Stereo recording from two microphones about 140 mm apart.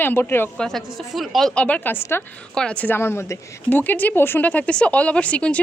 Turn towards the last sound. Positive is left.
turn(degrees=10)  # may be behind; listen again after turning